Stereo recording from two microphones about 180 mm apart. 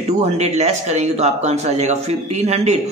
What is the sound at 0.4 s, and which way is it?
Speech, 40° right (ahead or behind).